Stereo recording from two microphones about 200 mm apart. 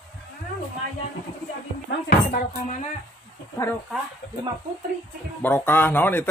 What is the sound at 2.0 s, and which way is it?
Speech, 40° left (ahead or behind).